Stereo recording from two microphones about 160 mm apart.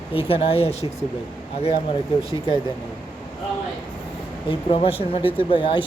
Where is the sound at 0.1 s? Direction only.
35° left (ahead or behind).